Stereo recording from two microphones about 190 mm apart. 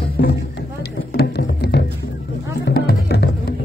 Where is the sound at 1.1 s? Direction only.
55° left (ahead or behind).